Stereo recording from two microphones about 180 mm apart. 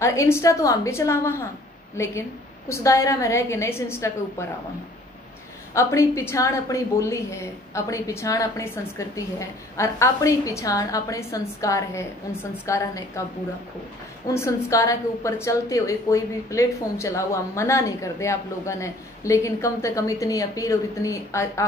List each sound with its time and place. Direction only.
0.0 s a woman's voice: 15° left (ahead or behind)
5.8 s a woman's voice: 15° left (ahead or behind)
14.3 s a woman's voice: 15° left (ahead or behind)